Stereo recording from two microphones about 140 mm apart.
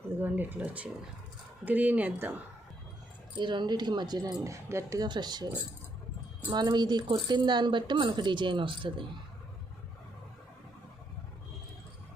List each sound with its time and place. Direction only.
0.1 s speech: 15° right (ahead or behind)
3.3 s speech: 35° right (ahead or behind)
6.5 s speech: 30° right (ahead or behind)